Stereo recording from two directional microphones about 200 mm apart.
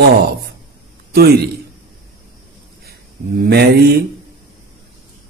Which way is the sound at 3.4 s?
50° right (ahead or behind).